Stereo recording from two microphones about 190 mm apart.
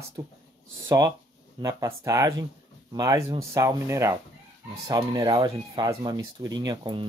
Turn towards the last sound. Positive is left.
turn(degrees=-25)  # may be behind; listen again after turning